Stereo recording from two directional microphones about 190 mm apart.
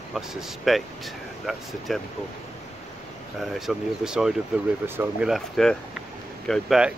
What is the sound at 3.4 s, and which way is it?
Speech, centre (ahead or behind).